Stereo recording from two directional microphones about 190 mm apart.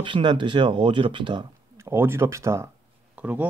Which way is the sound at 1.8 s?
15° right (ahead or behind).